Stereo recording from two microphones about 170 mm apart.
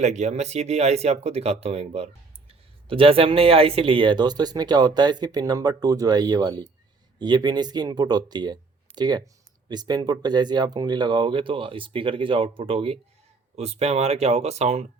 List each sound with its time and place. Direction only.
0.0 s speech: 45° right (ahead or behind)